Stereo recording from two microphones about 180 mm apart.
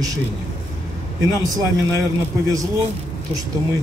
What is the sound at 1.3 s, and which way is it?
Speech, 20° right (ahead or behind).